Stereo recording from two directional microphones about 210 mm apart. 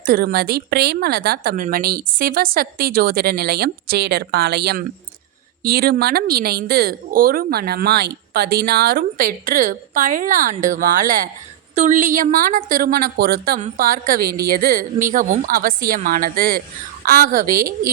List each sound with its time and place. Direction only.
0.0 s a woman's voice: 45° right (ahead or behind)